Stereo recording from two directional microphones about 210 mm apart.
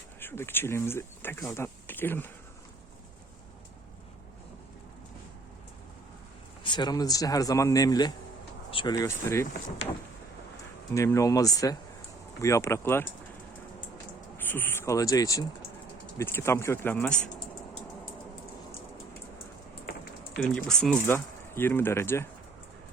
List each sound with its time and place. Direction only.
0.2 s speech: 10° left (ahead or behind)
6.6 s speech: 20° left (ahead or behind)
10.9 s speech: 15° left (ahead or behind)
14.3 s speech: 10° left (ahead or behind)
20.4 s speech: 5° left (ahead or behind)